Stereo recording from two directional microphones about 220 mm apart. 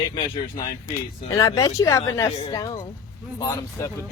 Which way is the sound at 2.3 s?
25° left (ahead or behind).